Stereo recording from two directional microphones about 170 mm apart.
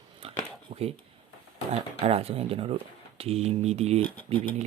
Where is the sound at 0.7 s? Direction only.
35° right (ahead or behind).